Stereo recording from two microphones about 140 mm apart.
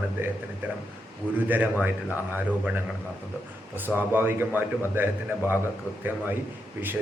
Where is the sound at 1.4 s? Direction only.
10° right (ahead or behind).